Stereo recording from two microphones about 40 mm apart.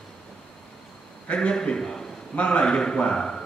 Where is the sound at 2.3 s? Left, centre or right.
Left.